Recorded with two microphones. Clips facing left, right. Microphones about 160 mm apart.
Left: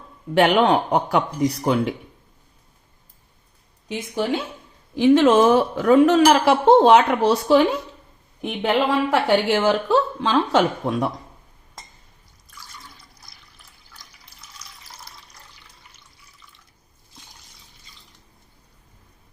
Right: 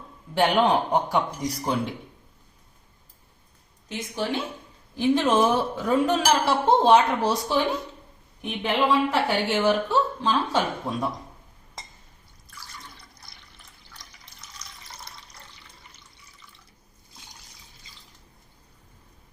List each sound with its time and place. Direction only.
0.3 s speech: 70° left (ahead or behind); by 1.9 s 90° left
4.9 s a woman's voice: 90° left; by 11.1 s 70° left (ahead or behind)
12.6 s water: centre (ahead or behind)